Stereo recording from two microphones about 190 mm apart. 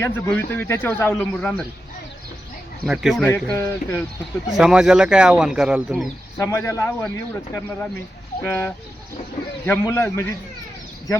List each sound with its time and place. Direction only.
0.0 s speech: 10° left (ahead or behind)
2.8 s speech: 5° right (ahead or behind)
3.2 s speech: 15° left (ahead or behind)
4.4 s speech: 5° right (ahead or behind)
6.3 s speech: 15° left (ahead or behind)